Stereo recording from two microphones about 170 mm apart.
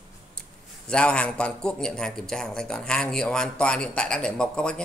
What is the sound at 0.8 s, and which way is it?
A man's voice, 5° left (ahead or behind).